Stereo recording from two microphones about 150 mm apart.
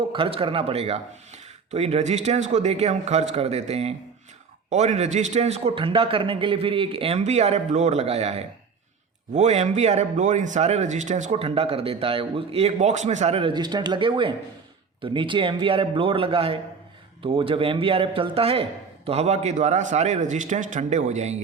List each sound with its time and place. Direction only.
0.1 s a man's voice: 35° right (ahead or behind)